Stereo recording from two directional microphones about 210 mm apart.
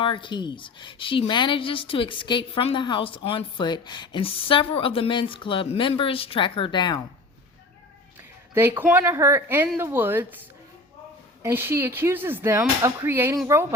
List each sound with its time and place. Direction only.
0.0 s a woman's voice: 25° left (ahead or behind)
8.5 s speech: 10° right (ahead or behind)
11.4 s speech: 10° right (ahead or behind)